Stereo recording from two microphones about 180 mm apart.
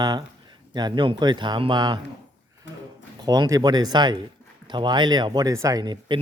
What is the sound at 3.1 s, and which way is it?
Speech, 25° right (ahead or behind).